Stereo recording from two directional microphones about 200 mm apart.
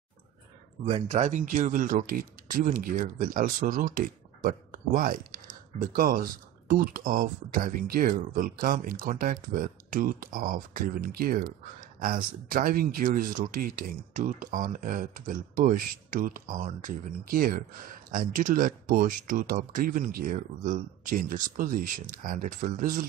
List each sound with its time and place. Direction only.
0.8 s speech: 30° right (ahead or behind)